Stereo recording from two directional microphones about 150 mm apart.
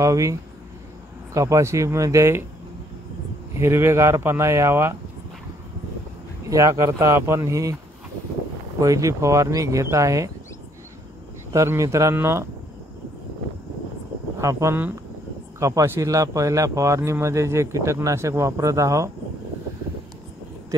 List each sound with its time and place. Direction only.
0.0 s speech: 20° right (ahead or behind)
3.5 s speech: 20° right (ahead or behind)
6.5 s speech: 20° right (ahead or behind)
8.7 s speech: 20° right (ahead or behind)
11.5 s speech: 20° right (ahead or behind)
14.4 s speech: 20° right (ahead or behind)